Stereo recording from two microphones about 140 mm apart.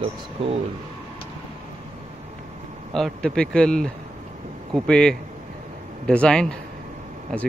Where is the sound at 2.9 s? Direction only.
5° left (ahead or behind).